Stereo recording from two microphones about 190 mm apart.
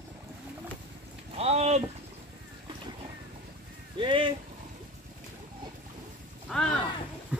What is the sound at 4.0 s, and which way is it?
Speech, 25° right (ahead or behind).